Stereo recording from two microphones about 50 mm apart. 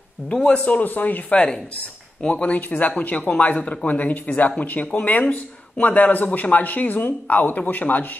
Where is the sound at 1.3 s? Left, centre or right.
Centre.